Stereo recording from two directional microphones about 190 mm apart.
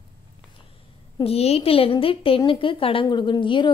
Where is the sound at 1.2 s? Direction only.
35° left (ahead or behind).